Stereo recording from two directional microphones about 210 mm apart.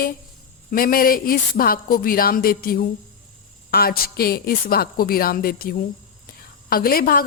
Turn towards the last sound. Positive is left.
turn(degrees=45)  # may be behind; listen again after turning